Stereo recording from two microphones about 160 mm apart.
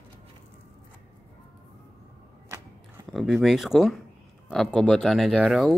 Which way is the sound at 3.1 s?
Centre (ahead or behind).